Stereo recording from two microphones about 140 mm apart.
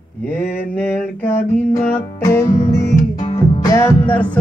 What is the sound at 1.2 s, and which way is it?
Music, 15° left (ahead or behind).